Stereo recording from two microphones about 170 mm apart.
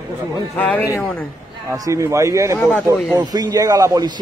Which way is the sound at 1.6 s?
20° right (ahead or behind).